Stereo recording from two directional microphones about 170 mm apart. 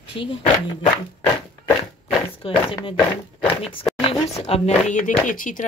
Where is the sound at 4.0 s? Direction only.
35° left (ahead or behind).